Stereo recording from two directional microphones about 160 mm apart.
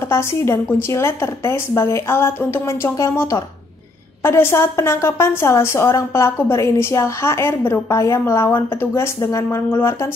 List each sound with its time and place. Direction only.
0.1 s a woman's voice: 15° left (ahead or behind)